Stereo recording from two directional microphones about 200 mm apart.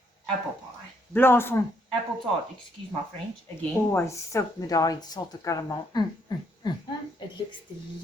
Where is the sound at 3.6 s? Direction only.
15° left (ahead or behind).